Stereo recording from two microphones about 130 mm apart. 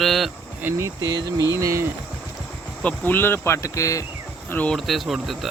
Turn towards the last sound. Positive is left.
turn(degrees=0)  # may be behind; listen again after turning